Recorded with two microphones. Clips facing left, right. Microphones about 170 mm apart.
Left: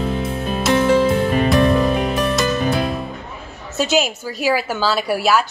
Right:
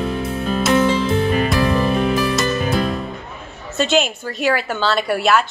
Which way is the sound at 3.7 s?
5° left (ahead or behind).